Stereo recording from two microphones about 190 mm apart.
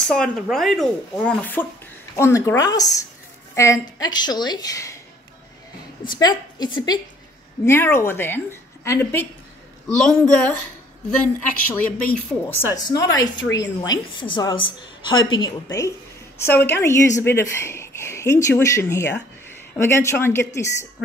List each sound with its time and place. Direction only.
0.1 s a woman's voice: centre (ahead or behind)
6.0 s a woman's voice: 20° left (ahead or behind); by 10.6 s 5° left (ahead or behind)
11.6 s a woman's voice: 5° left (ahead or behind)